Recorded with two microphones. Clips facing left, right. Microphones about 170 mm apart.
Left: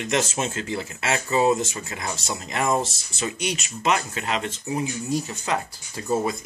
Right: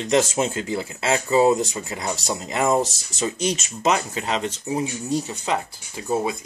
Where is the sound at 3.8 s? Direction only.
25° right (ahead or behind).